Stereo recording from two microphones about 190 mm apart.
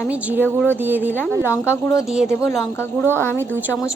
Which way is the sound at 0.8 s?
10° right (ahead or behind).